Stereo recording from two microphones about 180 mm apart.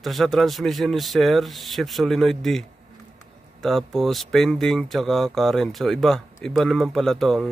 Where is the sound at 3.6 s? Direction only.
Centre (ahead or behind).